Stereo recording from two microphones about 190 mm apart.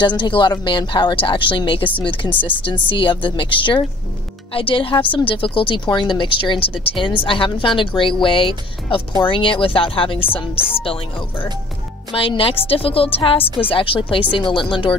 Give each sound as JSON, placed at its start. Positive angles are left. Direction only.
{"t": 0.0, "sound": "a woman's voice", "side_deg": 25}
{"t": 12.1, "sound": "a woman's voice", "side_deg": 30}